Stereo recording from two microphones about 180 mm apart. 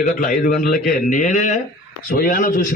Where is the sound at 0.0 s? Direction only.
50° left (ahead or behind).